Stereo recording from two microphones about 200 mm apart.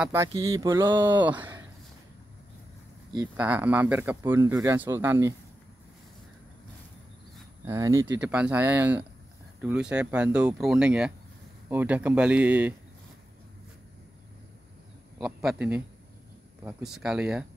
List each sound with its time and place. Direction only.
0.0 s speech: 15° right (ahead or behind)
1.1 s speech: 10° right (ahead or behind)
3.3 s speech: 10° right (ahead or behind)
7.6 s speech: 15° right (ahead or behind)
15.1 s speech: 5° right (ahead or behind)